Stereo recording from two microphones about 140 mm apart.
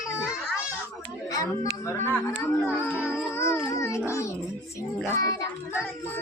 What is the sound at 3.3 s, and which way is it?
Music, 20° left (ahead or behind).